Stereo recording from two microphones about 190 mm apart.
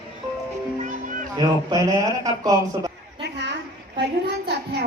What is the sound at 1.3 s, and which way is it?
Speech, 20° right (ahead or behind).